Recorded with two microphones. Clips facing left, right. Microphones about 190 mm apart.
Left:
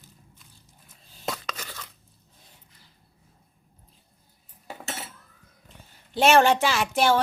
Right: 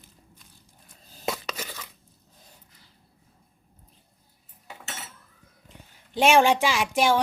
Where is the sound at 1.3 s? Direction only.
10° right (ahead or behind).